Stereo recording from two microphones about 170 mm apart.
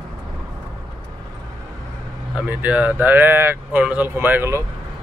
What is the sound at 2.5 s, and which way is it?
Speech, 10° right (ahead or behind).